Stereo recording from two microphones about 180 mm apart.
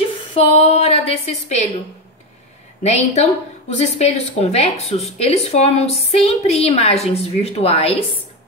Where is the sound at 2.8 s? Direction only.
35° left (ahead or behind).